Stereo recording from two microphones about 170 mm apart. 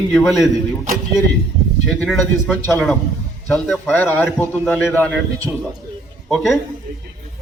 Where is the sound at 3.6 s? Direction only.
Centre (ahead or behind).